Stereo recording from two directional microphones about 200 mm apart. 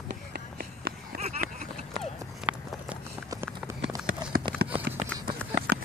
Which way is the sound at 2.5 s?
5° right (ahead or behind).